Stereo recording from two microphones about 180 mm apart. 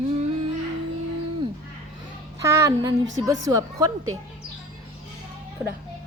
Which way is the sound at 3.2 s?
20° right (ahead or behind).